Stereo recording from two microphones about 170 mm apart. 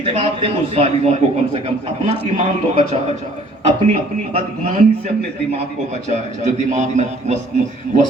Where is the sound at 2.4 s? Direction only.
40° right (ahead or behind).